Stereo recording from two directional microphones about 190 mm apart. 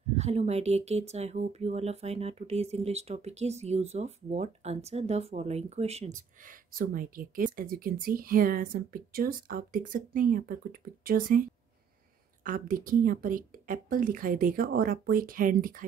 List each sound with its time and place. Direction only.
0.1 s speech: 35° right (ahead or behind)
12.4 s speech: 45° right (ahead or behind)